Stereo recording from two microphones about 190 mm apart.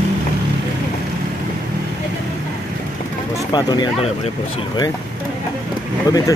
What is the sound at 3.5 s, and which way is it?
Speech, 20° left (ahead or behind).